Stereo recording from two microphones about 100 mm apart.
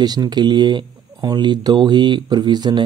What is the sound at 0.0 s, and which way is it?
Speech, 40° right (ahead or behind).